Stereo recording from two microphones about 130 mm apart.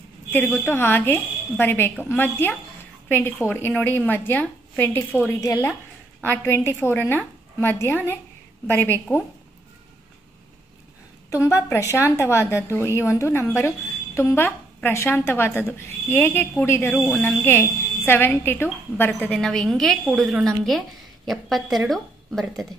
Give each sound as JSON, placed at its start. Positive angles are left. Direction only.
{"t": 0.3, "sound": "a woman's voice", "side_deg": 15}
{"t": 11.5, "sound": "a woman's voice", "side_deg": 20}